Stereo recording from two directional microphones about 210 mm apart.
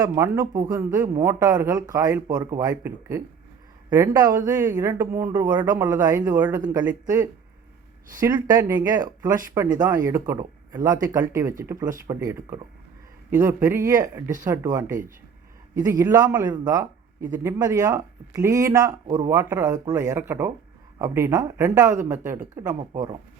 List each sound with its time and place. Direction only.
0.0 s speech: 15° right (ahead or behind)
8.2 s speech: 20° right (ahead or behind)